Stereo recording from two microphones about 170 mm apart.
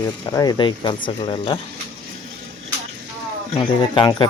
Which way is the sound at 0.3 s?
25° left (ahead or behind).